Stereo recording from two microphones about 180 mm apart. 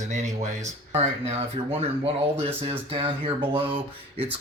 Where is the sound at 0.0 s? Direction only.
40° right (ahead or behind).